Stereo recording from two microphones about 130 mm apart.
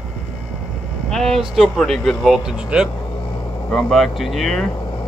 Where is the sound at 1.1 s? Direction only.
Centre (ahead or behind).